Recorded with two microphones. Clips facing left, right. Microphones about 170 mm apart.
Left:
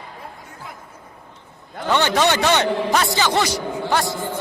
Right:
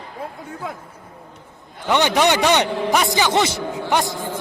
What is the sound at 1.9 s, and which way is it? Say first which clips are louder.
A man's voice: right 1 dB; 15° right (ahead or behind).